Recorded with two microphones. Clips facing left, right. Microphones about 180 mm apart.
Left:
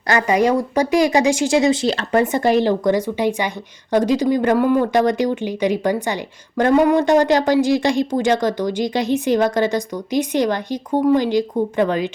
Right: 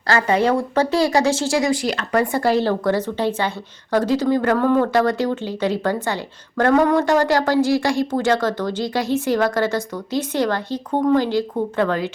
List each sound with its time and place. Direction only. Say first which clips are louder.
0.1 s speech: left 1 dB; 15° left (ahead or behind)